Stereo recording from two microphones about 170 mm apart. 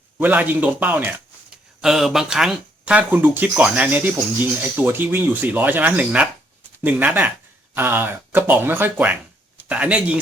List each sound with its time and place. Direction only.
0.2 s a man's voice: 10° right (ahead or behind)